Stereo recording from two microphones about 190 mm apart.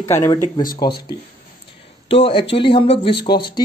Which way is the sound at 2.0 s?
30° left (ahead or behind).